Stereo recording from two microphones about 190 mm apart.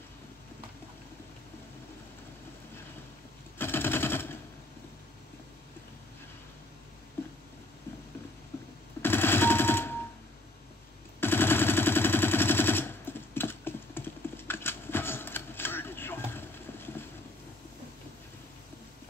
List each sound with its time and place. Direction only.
3.5 s machine gun: 10° left (ahead or behind)
9.0 s a sound: 10° left (ahead or behind)
11.1 s machine gun: 10° left (ahead or behind)